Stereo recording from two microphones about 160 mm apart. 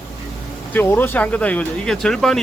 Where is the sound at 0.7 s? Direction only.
10° left (ahead or behind).